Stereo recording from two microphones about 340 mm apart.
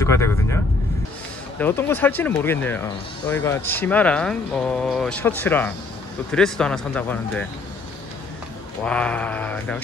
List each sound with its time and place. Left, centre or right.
0.0 s vehicle: centre
1.6 s speech: centre
8.8 s speech: centre